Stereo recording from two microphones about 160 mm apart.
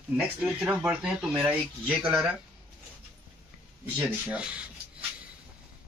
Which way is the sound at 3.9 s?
10° right (ahead or behind).